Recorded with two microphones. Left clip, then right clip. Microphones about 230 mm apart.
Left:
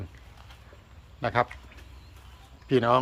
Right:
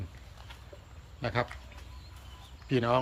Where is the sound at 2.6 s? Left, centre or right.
Left.